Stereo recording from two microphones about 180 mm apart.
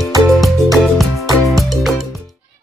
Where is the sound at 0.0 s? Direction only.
Centre (ahead or behind).